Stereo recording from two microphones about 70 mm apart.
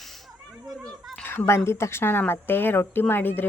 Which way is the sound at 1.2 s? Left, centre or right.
Left.